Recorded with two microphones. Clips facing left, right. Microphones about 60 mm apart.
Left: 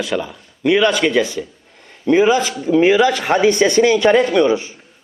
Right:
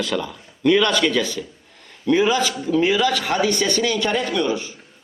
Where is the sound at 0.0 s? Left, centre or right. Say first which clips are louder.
Left 3 dB; centre.